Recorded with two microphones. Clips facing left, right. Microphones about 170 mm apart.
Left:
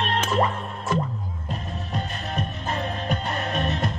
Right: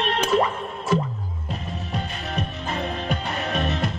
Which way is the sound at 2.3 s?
45° left (ahead or behind).